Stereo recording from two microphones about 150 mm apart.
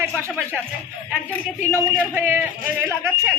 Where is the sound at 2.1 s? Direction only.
15° right (ahead or behind).